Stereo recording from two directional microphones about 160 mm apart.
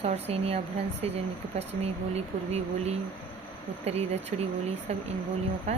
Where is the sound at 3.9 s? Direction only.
40° right (ahead or behind).